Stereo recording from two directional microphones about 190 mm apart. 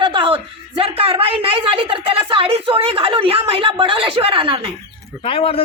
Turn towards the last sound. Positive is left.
turn(degrees=30)  # may be behind; listen again after turning